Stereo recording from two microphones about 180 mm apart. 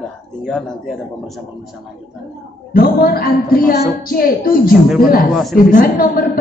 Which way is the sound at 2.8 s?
55° left (ahead or behind).